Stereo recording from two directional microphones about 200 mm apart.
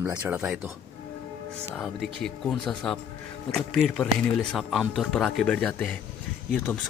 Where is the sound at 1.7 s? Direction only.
5° left (ahead or behind).